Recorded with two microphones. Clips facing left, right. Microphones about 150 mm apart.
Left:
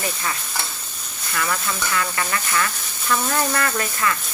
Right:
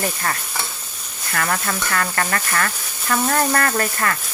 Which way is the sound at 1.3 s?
55° right (ahead or behind).